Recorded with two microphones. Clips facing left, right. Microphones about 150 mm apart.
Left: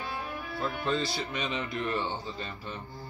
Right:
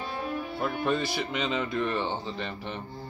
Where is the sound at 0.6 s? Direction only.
15° right (ahead or behind).